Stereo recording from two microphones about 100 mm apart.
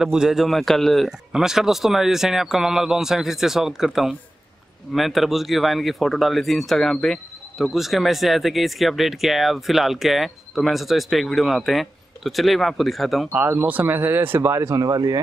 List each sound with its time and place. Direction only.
0.0 s speech: 5° right (ahead or behind)
13.3 s speech: 20° right (ahead or behind); by 15.1 s 40° right (ahead or behind)